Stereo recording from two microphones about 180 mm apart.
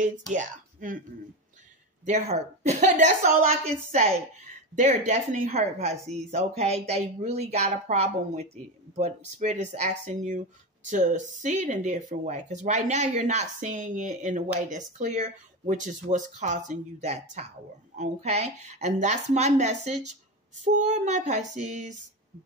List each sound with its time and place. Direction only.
0.3 s speech: 45° right (ahead or behind)
2.0 s speech: 40° right (ahead or behind)